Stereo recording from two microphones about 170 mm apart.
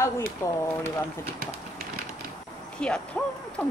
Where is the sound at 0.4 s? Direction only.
15° left (ahead or behind).